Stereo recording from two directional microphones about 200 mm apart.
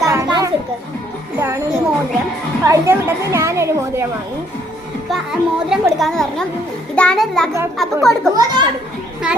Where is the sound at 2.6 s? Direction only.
15° right (ahead or behind).